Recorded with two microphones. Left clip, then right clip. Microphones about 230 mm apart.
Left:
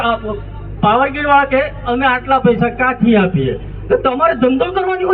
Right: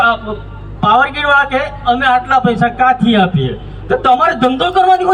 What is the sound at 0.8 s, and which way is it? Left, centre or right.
A man's voice, right.